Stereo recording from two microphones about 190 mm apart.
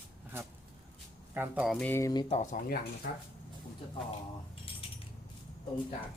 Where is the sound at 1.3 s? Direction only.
10° right (ahead or behind).